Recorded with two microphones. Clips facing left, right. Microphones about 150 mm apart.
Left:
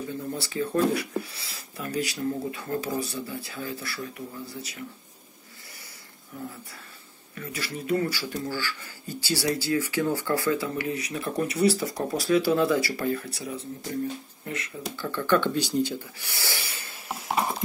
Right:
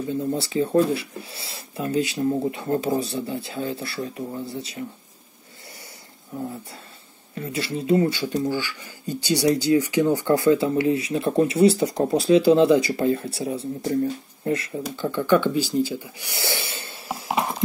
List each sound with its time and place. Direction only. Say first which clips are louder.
0.3 s speech: right 7 dB; 25° right (ahead or behind)
6.3 s speech: right 7 dB; 25° right (ahead or behind)
15.0 s speech: right 4 dB; 15° right (ahead or behind)
16.3 s snort: right 7 dB; 25° right (ahead or behind)
17.1 s a sound: right 2 dB; centre (ahead or behind)